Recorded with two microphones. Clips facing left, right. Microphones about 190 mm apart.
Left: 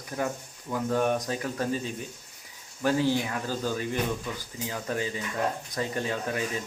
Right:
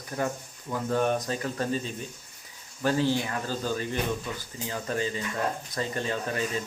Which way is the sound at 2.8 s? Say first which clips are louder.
Even; 10° left (ahead or behind).